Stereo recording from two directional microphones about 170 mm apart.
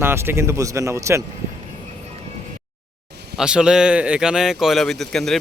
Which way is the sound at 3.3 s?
5° right (ahead or behind).